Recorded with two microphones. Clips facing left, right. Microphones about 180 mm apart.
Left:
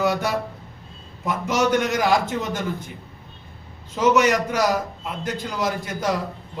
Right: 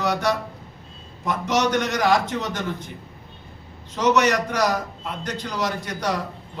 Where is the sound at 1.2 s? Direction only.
5° left (ahead or behind).